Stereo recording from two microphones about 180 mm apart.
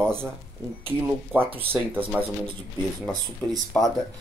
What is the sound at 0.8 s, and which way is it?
Speech, 10° right (ahead or behind).